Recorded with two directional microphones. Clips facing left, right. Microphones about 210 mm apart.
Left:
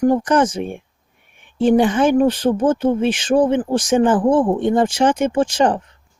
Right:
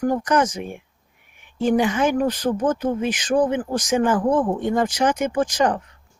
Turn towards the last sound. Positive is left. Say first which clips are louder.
# left 4 dB
turn(degrees=30)  # may be behind; listen again after turning